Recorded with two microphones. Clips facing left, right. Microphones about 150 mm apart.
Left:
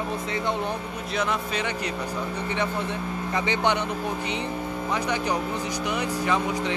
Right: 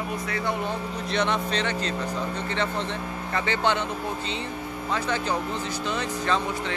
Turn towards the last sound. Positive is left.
turn(degrees=15)  # may be behind; listen again after turning